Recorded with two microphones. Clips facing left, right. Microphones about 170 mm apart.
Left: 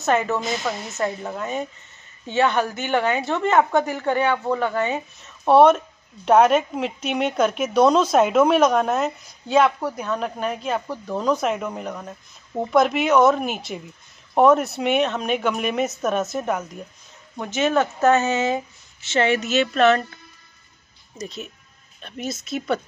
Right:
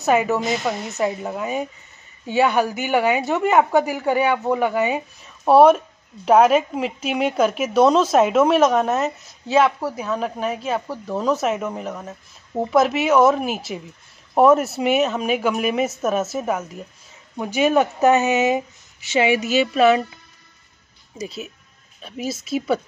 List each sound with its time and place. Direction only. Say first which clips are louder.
0.0 s a woman's voice: right 3 dB; 10° right (ahead or behind)
21.2 s a woman's voice: right 2 dB; 5° right (ahead or behind)